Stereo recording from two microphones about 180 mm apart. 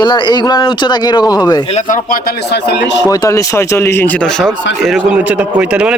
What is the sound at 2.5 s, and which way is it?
Speech, 75° left (ahead or behind).